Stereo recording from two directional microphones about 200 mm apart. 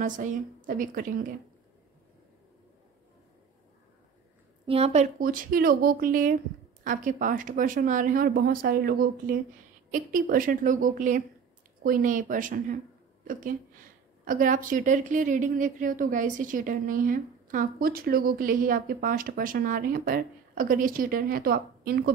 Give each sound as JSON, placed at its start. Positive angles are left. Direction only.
{"t": 0.0, "sound": "a woman's voice", "side_deg": -40}
{"t": 4.6, "sound": "a woman's voice", "side_deg": -30}